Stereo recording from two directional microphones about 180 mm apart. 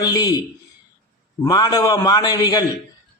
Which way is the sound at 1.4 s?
20° left (ahead or behind).